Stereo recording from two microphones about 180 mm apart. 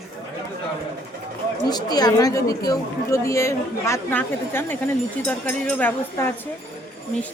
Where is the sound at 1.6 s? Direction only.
20° left (ahead or behind).